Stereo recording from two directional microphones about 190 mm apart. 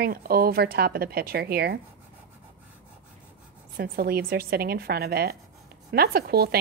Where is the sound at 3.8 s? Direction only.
50° right (ahead or behind).